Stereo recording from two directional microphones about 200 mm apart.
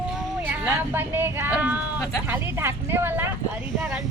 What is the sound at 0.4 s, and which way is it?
Speech, 10° right (ahead or behind).